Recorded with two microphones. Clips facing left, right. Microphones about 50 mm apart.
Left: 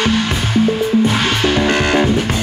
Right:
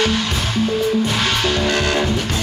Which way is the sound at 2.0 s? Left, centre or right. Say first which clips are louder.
Left 5 dB; centre.